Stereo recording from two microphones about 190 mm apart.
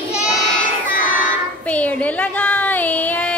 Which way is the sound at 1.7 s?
5° left (ahead or behind).